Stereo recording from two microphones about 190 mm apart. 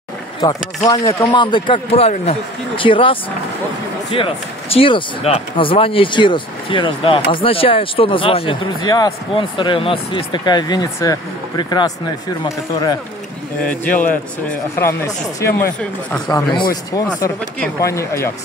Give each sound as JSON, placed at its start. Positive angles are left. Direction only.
{"t": 0.8, "sound": "speech", "side_deg": 20}
{"t": 13.8, "sound": "a man's voice", "side_deg": 45}
{"t": 14.1, "sound": "speech", "side_deg": 10}
{"t": 17.7, "sound": "speech", "side_deg": 15}